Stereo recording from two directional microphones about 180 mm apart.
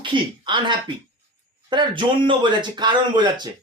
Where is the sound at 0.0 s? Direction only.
25° right (ahead or behind).